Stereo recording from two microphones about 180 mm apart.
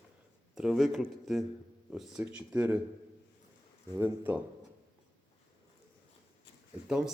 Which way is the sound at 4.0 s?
10° right (ahead or behind).